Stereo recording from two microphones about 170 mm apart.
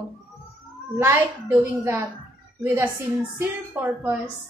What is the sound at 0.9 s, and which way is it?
A woman's voice, 15° right (ahead or behind).